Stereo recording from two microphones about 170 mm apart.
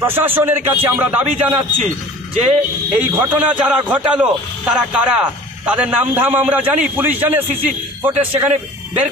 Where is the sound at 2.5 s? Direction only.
10° right (ahead or behind).